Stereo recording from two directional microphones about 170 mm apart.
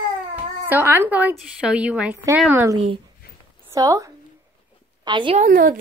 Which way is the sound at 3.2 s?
65° left (ahead or behind).